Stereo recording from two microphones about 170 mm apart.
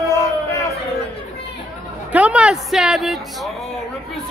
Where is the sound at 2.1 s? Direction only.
10° right (ahead or behind).